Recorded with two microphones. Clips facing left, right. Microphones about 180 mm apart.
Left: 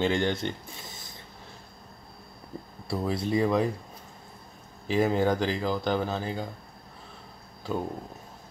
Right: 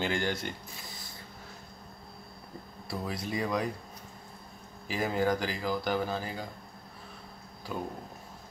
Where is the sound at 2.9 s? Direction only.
25° left (ahead or behind).